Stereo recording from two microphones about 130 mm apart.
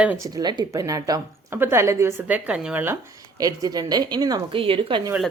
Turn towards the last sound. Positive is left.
turn(degrees=-40)  # may be behind; listen again after turning